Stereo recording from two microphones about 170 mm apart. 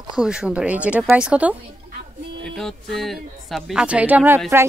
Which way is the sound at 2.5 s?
Centre (ahead or behind).